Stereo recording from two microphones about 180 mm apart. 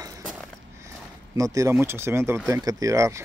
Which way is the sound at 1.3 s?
20° right (ahead or behind).